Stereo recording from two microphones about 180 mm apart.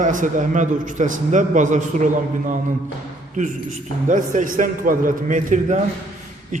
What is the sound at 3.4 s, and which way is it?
A man's voice, 45° right (ahead or behind).